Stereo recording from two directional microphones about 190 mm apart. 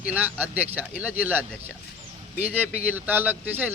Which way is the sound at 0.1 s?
10° right (ahead or behind).